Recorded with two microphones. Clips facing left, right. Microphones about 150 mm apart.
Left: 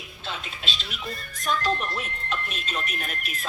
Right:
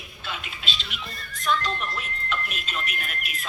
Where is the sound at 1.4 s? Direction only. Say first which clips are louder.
Left 1 dB; 40° left (ahead or behind).